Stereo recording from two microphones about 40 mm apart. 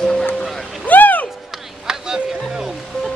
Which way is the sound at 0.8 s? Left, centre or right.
Left.